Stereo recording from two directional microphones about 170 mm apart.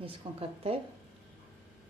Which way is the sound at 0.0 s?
35° right (ahead or behind).